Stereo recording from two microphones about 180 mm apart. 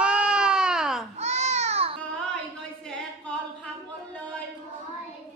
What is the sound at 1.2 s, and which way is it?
Baby cry, 40° right (ahead or behind).